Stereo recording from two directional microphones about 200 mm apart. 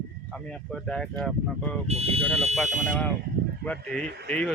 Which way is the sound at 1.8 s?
30° right (ahead or behind).